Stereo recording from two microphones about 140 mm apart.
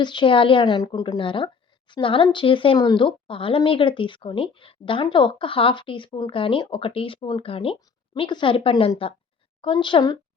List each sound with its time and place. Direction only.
0.0 s a woman's voice: 35° left (ahead or behind)